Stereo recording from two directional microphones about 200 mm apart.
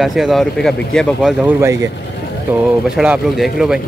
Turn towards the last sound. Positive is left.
turn(degrees=-5)  # may be behind; listen again after turning